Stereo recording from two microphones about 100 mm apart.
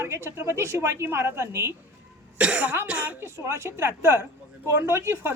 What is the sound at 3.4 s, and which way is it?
Speech, 30° right (ahead or behind).